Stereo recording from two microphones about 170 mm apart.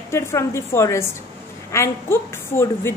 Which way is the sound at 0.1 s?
15° left (ahead or behind).